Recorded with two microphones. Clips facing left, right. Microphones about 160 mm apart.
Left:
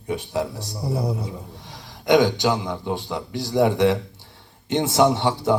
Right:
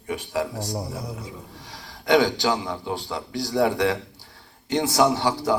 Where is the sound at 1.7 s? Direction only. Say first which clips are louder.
Left 2 dB; 20° left (ahead or behind).